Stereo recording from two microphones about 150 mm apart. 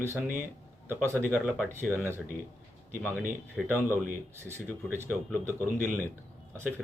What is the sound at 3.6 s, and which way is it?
Speech, centre (ahead or behind).